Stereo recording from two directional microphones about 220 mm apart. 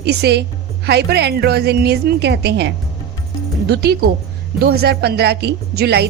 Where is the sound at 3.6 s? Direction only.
45° right (ahead or behind).